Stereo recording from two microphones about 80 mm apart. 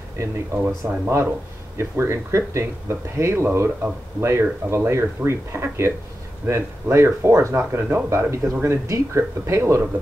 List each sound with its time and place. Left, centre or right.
0.8 s speech: right